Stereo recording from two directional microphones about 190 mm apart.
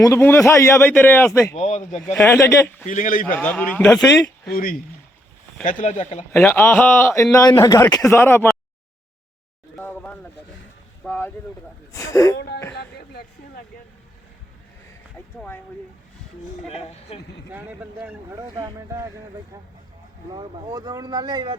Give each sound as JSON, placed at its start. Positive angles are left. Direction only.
{"t": 0.0, "sound": "a man's voice", "side_deg": 15}
{"t": 1.5, "sound": "speech", "side_deg": 35}
{"t": 2.1, "sound": "a man's voice", "side_deg": 10}
{"t": 2.8, "sound": "a man's voice", "side_deg": 45}
{"t": 3.3, "sound": "a man's voice", "side_deg": 10}
{"t": 4.5, "sound": "a man's voice", "side_deg": 50}
{"t": 6.3, "sound": "a man's voice", "side_deg": 10}
{"t": 9.8, "sound": "a sound", "side_deg": 5}
{"t": 11.0, "sound": "a man's voice", "side_deg": 10}
{"t": 15.4, "sound": "a man's voice", "side_deg": 10}
{"t": 16.6, "sound": "speech", "side_deg": 30}
{"t": 17.5, "sound": "speech", "side_deg": -10}
{"t": 18.5, "sound": "speech", "side_deg": -20}
{"t": 20.3, "sound": "speech", "side_deg": -20}